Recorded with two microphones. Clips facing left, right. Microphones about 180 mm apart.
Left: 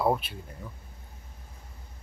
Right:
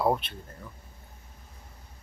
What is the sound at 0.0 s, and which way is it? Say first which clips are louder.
Speech: even; 5° left (ahead or behind).